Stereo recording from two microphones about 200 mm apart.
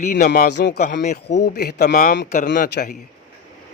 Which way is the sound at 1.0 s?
35° left (ahead or behind).